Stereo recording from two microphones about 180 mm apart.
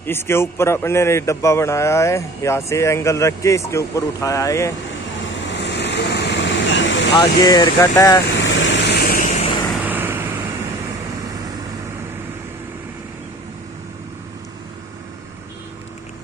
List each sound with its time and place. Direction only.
0.0 s a man's voice: 15° left (ahead or behind)
5.2 s vehicle: 75° left (ahead or behind)
7.2 s speech: 25° left (ahead or behind)
8.5 s vehicle: 90° left; by 9.2 s 60° left (ahead or behind)
9.3 s vehicle: 35° left (ahead or behind)
9.8 s vehicle: 10° right (ahead or behind)